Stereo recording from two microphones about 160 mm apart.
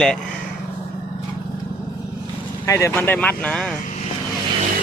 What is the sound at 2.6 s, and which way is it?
Speech, 20° left (ahead or behind).